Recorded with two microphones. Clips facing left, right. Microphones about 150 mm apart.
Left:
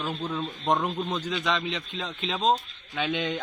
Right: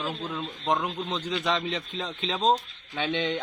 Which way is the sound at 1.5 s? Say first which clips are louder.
Right 1 dB; 35° right (ahead or behind).